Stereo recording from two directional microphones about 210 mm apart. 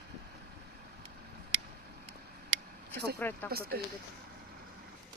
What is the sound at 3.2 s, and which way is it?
Speech, 10° left (ahead or behind).